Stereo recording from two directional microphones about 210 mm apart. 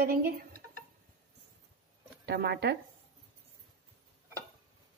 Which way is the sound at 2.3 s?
50° right (ahead or behind).